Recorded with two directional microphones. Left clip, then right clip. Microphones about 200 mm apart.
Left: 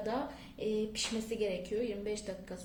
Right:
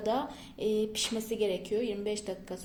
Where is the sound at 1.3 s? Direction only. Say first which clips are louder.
Right 6 dB; 40° right (ahead or behind).